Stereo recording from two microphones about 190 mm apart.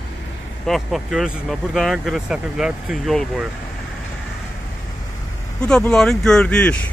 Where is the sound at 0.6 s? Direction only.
Centre (ahead or behind).